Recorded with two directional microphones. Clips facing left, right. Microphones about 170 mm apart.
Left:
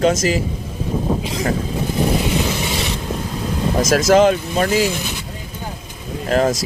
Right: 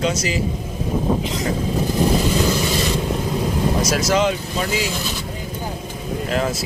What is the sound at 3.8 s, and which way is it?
Speech, 50° left (ahead or behind).